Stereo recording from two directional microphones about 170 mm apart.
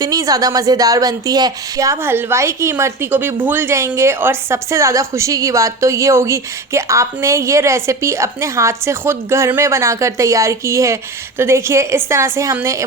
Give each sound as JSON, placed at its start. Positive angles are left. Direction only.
{"t": 0.0, "sound": "speech", "side_deg": -20}